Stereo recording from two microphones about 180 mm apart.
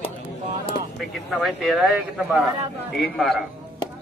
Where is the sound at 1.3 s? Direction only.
Centre (ahead or behind).